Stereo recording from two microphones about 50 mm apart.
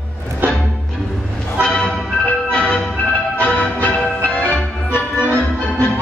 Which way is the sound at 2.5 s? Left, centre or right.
Left.